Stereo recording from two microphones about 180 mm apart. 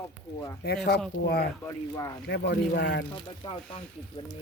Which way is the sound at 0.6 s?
65° left (ahead or behind).